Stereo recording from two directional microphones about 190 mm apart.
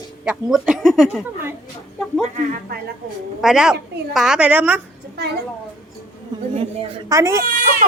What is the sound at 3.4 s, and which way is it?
A woman's voice, 5° right (ahead or behind).